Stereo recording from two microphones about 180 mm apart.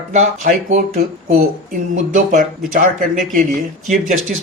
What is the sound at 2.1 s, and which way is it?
A man's voice, 50° right (ahead or behind).